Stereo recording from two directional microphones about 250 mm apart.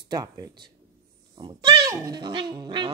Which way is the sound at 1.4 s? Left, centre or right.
Centre.